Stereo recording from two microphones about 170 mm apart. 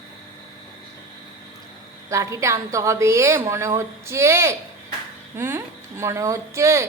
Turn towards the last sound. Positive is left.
turn(degrees=-15)  # may be behind; listen again after turning